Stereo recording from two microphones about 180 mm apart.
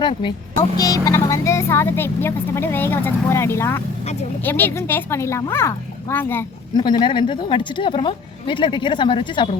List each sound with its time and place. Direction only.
0.0 s a woman's voice: 25° left (ahead or behind)
6.7 s a woman's voice: 25° left (ahead or behind)